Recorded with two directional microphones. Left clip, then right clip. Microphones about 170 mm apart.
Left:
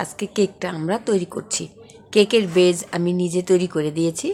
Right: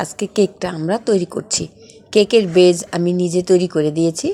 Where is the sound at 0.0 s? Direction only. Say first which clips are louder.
Right 4 dB; 20° right (ahead or behind).